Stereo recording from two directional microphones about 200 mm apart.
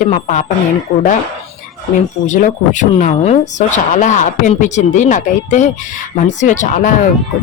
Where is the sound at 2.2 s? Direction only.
35° left (ahead or behind).